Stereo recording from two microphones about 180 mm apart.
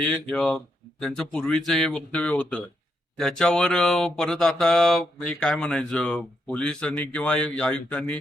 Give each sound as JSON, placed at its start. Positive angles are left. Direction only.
{"t": 0.0, "sound": "speech", "side_deg": 5}